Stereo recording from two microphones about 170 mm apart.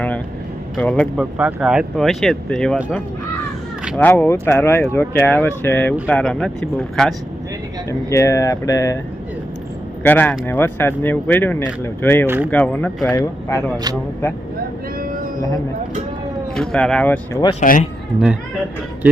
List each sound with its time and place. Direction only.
0.8 s speech: 5° left (ahead or behind)
1.2 s speech: 10° right (ahead or behind)
3.9 s speech: 10° left (ahead or behind)
7.9 s speech: 20° left (ahead or behind)
10.0 s speech: 10° left (ahead or behind)
12.2 s speech: 15° right (ahead or behind)
12.5 s speech: 10° left (ahead or behind)
13.1 s speech: 20° left (ahead or behind)
14.9 s a sound: 55° right (ahead or behind)
16.6 s speech: 5° left (ahead or behind)
17.6 s speech: 50° left (ahead or behind)